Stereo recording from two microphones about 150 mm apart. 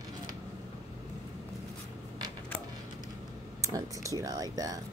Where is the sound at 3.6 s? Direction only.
20° right (ahead or behind).